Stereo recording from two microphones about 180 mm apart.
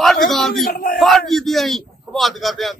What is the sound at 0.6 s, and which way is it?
Speech, 50° left (ahead or behind).